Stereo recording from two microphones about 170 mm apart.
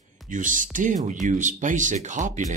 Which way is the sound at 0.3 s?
50° right (ahead or behind).